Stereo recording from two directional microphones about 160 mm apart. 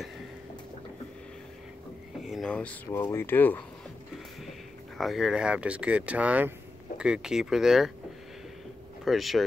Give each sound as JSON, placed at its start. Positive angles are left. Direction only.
{"t": 2.2, "sound": "speech", "side_deg": 0}
{"t": 4.9, "sound": "speech", "side_deg": 0}
{"t": 9.0, "sound": "speech", "side_deg": 0}